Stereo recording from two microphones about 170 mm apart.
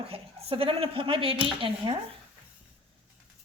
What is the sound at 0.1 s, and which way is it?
A woman's voice, 35° right (ahead or behind).